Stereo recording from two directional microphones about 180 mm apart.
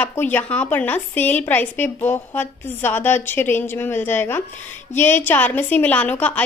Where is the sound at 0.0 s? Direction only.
10° left (ahead or behind).